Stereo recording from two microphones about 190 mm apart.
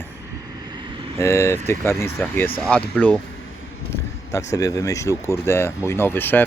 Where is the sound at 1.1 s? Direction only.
15° left (ahead or behind).